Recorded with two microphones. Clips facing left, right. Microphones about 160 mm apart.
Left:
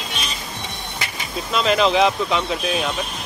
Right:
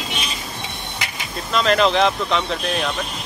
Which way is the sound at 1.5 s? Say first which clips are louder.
Right 1 dB; 5° left (ahead or behind).